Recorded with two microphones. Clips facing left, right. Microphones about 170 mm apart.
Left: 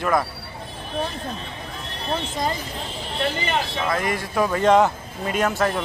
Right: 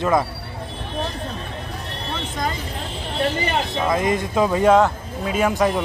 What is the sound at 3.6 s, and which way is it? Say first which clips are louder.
A man's voice: right 4 dB; 20° right (ahead or behind).